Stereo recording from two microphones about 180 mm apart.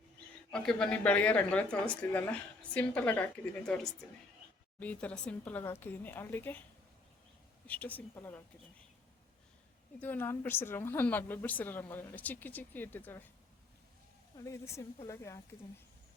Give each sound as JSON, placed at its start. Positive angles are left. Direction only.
{"t": 0.5, "sound": "a woman's voice", "side_deg": 5}
{"t": 4.8, "sound": "a woman's voice", "side_deg": 10}
{"t": 7.7, "sound": "a woman's voice", "side_deg": 10}
{"t": 10.0, "sound": "a woman's voice", "side_deg": 10}
{"t": 14.3, "sound": "a woman's voice", "side_deg": 15}